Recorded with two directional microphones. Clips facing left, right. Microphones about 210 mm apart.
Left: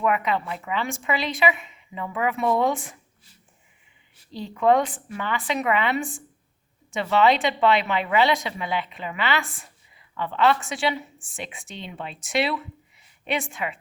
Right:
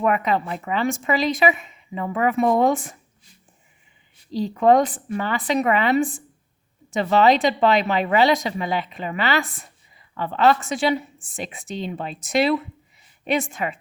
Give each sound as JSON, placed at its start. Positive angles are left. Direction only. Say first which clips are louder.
{"t": 0.0, "sound": "a woman's voice", "louder": "right 3 dB", "side_deg": -40}
{"t": 4.3, "sound": "a woman's voice", "louder": "right 4 dB", "side_deg": -40}